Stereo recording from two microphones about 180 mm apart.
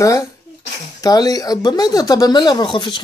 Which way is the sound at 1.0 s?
20° left (ahead or behind).